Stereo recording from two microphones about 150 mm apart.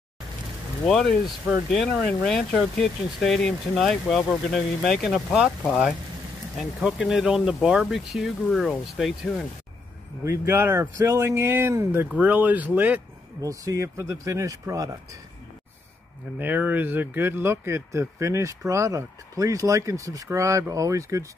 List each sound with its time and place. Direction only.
0.8 s speech: centre (ahead or behind)
10.2 s speech: 20° right (ahead or behind)
13.4 s speech: 20° right (ahead or behind)
16.3 s speech: 10° right (ahead or behind)